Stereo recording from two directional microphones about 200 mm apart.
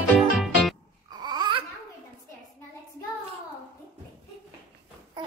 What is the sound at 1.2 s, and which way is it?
Babbling, 20° right (ahead or behind).